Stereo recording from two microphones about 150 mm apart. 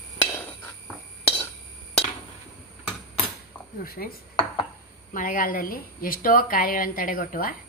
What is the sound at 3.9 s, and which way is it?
Dishes, 80° left.